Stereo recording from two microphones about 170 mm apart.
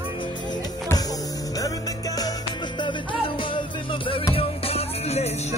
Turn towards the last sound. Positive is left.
turn(degrees=40)  # may be behind; listen again after turning